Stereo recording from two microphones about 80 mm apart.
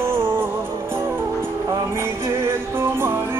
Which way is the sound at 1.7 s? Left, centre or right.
Right.